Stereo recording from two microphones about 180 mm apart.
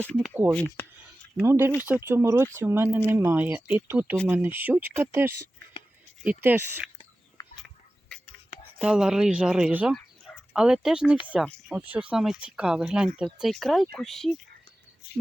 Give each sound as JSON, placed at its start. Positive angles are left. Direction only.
{"t": 0.0, "sound": "speech", "side_deg": 10}
{"t": 1.4, "sound": "speech", "side_deg": -10}
{"t": 7.4, "sound": "a sound", "side_deg": 25}
{"t": 8.8, "sound": "speech", "side_deg": -5}